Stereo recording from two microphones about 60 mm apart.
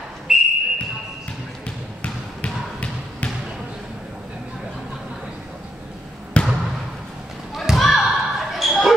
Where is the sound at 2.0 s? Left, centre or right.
Left.